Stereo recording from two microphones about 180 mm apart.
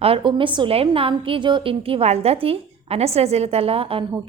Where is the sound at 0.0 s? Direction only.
30° right (ahead or behind).